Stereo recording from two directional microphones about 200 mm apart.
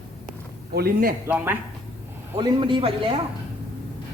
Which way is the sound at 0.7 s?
55° right (ahead or behind).